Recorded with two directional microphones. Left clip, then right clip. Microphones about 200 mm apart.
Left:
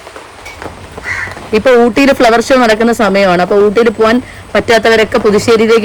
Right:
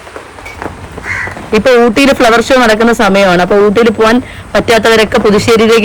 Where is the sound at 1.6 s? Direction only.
20° left (ahead or behind).